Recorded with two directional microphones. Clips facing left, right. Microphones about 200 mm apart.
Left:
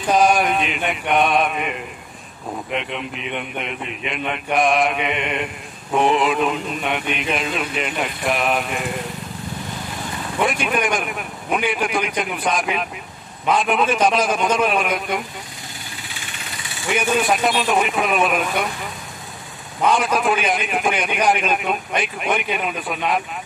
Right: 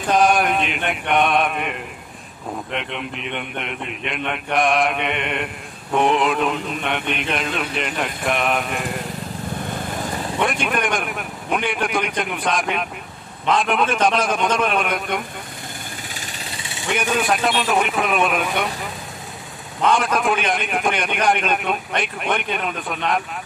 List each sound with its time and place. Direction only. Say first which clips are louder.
0.1 s mantra: left 1 dB; centre (ahead or behind)
2.7 s a man's voice: left 3 dB; centre (ahead or behind)
9.7 s vehicle: right 3 dB; 55° right (ahead or behind)
10.4 s a man's voice: left 2 dB; centre (ahead or behind)
16.1 s engine: right 2 dB; 35° right (ahead or behind)
16.8 s a man's voice: left 2 dB; 5° left (ahead or behind)
19.8 s a man's voice: even; 5° left (ahead or behind)